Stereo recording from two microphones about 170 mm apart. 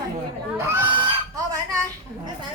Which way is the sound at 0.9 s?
25° right (ahead or behind).